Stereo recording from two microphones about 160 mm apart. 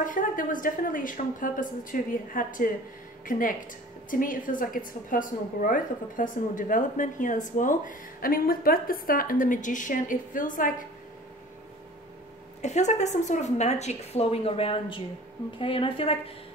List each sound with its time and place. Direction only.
0.0 s a woman's voice: 55° left (ahead or behind)
12.6 s a woman's voice: 45° left (ahead or behind)